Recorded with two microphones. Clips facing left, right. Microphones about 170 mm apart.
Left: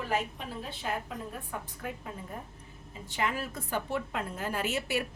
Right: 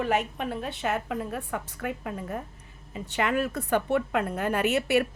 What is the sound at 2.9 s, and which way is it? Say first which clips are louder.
A woman's voice: right 6 dB; 70° right (ahead or behind).